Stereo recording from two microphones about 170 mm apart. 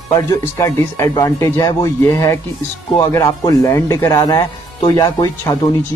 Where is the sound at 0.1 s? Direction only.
20° left (ahead or behind).